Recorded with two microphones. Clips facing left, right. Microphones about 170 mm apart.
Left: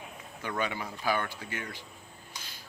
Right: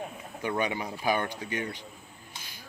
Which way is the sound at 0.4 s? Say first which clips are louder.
Right 4 dB; 20° right (ahead or behind).